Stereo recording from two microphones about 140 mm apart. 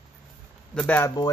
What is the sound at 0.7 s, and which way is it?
Speech, 10° left (ahead or behind).